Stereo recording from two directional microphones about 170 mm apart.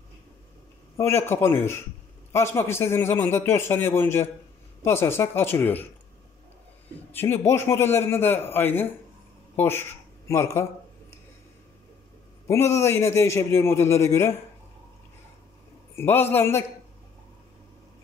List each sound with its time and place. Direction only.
0.9 s a man's voice: 15° left (ahead or behind)
7.2 s a man's voice: 15° left (ahead or behind)
9.6 s a sound: 15° left (ahead or behind)
12.4 s a man's voice: 15° left (ahead or behind)
16.0 s a man's voice: 15° left (ahead or behind)